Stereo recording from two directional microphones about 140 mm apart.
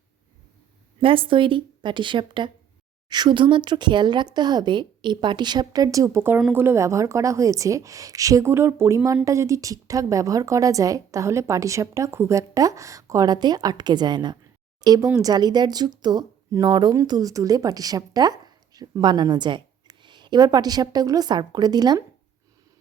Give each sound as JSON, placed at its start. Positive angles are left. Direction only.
{"t": 1.0, "sound": "a woman's voice", "side_deg": -40}